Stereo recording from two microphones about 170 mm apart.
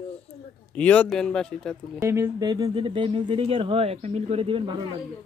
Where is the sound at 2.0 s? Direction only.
15° right (ahead or behind); by 4.7 s 30° right (ahead or behind).